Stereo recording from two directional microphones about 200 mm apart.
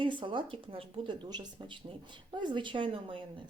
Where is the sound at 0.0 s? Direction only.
25° right (ahead or behind).